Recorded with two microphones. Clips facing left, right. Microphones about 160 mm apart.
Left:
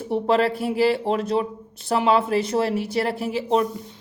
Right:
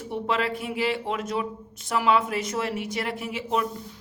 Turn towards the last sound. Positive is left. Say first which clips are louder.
# left 6 dB
turn(degrees=35)  # may be behind; listen again after turning